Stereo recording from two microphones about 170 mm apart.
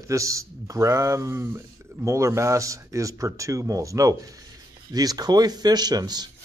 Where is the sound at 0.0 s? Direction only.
20° right (ahead or behind).